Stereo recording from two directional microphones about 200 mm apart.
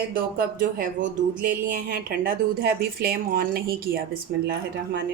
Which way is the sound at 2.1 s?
50° right (ahead or behind).